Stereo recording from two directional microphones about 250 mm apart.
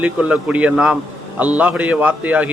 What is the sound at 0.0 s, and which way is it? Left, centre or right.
A man's voice, centre.